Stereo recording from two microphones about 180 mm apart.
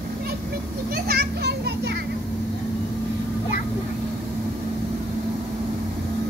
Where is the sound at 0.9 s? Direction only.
60° right (ahead or behind).